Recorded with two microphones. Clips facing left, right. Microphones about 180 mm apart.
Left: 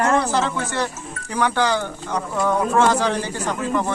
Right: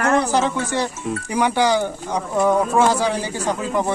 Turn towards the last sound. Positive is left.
turn(degrees=-10)  # may be behind; listen again after turning